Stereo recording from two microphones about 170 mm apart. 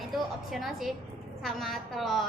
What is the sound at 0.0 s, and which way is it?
A woman's voice, centre (ahead or behind).